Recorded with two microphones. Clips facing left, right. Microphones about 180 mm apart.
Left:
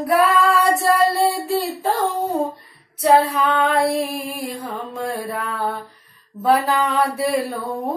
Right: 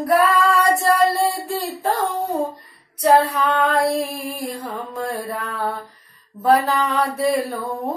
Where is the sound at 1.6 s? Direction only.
10° left (ahead or behind).